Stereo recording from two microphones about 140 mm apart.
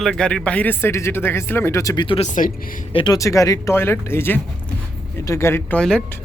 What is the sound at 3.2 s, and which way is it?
Speech, 25° left (ahead or behind).